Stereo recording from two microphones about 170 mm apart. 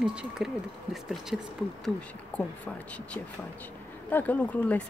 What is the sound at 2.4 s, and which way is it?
Speech, 10° left (ahead or behind).